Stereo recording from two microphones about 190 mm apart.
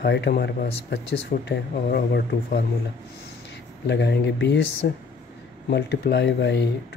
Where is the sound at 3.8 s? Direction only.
65° left (ahead or behind).